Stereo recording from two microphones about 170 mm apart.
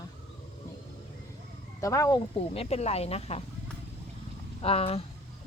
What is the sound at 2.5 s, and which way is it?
Speech, 35° left (ahead or behind).